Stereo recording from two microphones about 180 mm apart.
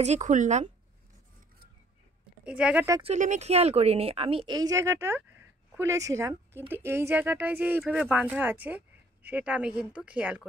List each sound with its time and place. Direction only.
0.0 s speech: 40° right (ahead or behind)
2.4 s speech: 5° right (ahead or behind)
3.0 s speech: 40° right (ahead or behind); by 10.4 s 5° right (ahead or behind)